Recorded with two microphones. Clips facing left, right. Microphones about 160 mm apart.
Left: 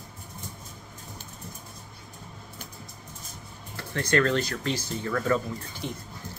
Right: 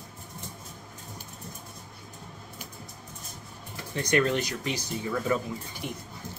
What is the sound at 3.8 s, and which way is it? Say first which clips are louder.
Speech: left 1 dB; 15° right (ahead or behind).